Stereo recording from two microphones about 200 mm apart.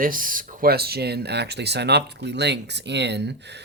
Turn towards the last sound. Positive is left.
turn(degrees=-60)  # may be behind; listen again after turning